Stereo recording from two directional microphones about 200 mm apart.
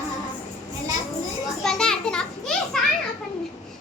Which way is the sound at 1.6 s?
5° left (ahead or behind).